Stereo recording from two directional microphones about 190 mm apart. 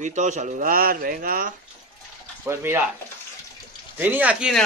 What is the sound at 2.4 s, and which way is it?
Speech, 10° right (ahead or behind).